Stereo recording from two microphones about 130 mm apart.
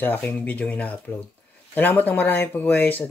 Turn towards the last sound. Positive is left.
turn(degrees=15)  # may be behind; listen again after turning